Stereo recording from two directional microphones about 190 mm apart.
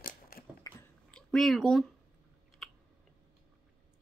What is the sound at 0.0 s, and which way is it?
Biting, 50° left (ahead or behind).